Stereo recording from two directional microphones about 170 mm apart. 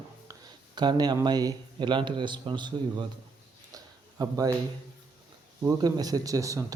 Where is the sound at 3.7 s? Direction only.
20° right (ahead or behind).